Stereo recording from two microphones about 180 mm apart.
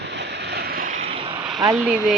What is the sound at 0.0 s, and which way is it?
Vehicle, 70° right (ahead or behind).